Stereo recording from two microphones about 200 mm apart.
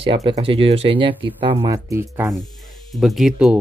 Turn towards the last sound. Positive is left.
turn(degrees=0)  # may be behind; listen again after turning